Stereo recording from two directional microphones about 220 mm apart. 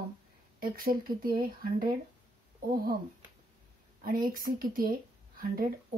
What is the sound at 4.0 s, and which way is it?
A woman's voice, 40° right (ahead or behind).